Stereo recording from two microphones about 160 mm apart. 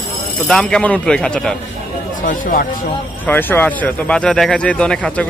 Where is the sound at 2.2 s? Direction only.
60° left (ahead or behind).